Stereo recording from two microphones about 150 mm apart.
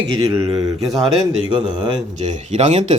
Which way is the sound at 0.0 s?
35° right (ahead or behind).